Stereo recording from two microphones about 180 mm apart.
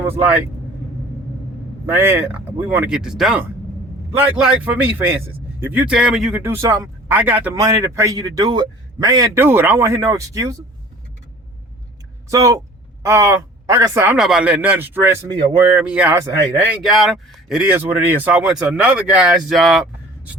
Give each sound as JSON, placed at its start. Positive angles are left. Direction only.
{"t": 1.9, "sound": "a man's voice", "side_deg": -15}
{"t": 6.4, "sound": "a man's voice", "side_deg": -15}
{"t": 12.3, "sound": "speech", "side_deg": -20}
{"t": 14.2, "sound": "a man's voice", "side_deg": -5}
{"t": 16.8, "sound": "speech", "side_deg": 0}